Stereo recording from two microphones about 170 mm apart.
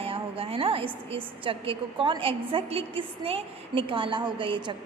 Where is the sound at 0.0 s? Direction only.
35° right (ahead or behind).